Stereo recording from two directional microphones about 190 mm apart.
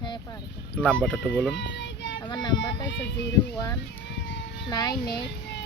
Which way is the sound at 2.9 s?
65° left (ahead or behind).